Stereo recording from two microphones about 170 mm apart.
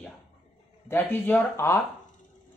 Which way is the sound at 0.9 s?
10° left (ahead or behind).